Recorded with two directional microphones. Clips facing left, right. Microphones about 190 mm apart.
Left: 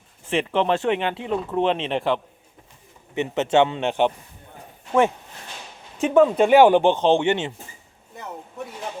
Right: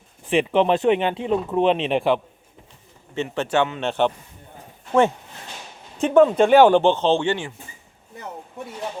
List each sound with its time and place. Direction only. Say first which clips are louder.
0.3 s speech: right 3 dB; 15° right (ahead or behind)
3.2 s a man's voice: left 3 dB; 20° left (ahead or behind)
6.0 s speech: right 1 dB; 5° left (ahead or behind)